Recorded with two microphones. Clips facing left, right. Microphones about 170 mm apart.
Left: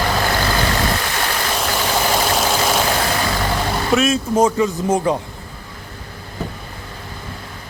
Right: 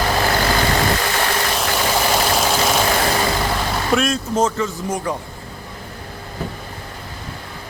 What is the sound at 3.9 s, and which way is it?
Speech, 5° left (ahead or behind).